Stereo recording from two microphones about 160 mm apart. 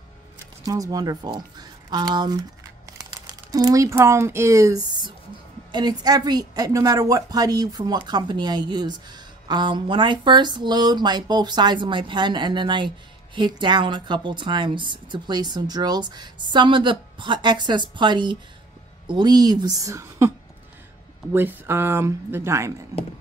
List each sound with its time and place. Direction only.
0.7 s a woman's voice: 20° right (ahead or behind)